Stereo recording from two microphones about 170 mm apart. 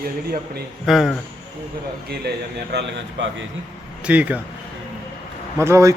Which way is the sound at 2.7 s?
75° right (ahead or behind).